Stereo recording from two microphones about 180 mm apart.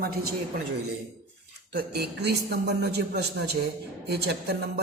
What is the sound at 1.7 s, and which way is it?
A man's voice, 65° right (ahead or behind).